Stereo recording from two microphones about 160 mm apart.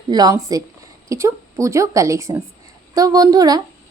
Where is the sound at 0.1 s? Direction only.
25° right (ahead or behind).